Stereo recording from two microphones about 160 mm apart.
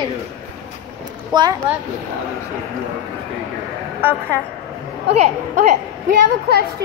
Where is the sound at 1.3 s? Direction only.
25° right (ahead or behind).